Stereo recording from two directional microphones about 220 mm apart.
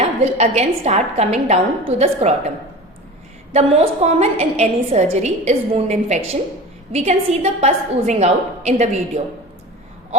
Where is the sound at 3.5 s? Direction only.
30° right (ahead or behind).